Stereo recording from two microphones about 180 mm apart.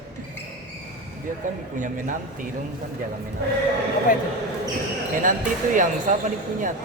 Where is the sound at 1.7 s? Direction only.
45° right (ahead or behind).